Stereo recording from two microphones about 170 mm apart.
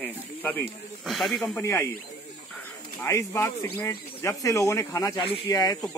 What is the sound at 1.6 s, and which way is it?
Speech, 15° left (ahead or behind).